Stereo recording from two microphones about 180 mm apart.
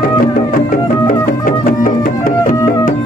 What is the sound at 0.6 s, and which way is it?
Music, 50° left (ahead or behind).